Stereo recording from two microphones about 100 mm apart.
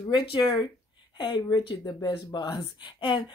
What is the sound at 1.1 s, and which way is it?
Speech, 45° left (ahead or behind).